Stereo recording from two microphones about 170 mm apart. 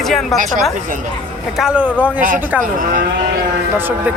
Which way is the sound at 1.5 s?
5° right (ahead or behind).